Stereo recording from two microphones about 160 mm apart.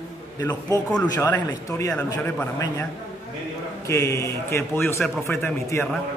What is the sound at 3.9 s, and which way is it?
A man's voice, 20° left (ahead or behind).